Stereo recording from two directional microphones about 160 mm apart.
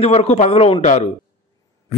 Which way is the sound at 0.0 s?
40° left (ahead or behind).